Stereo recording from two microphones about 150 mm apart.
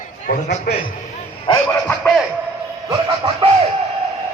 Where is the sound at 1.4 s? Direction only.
20° left (ahead or behind).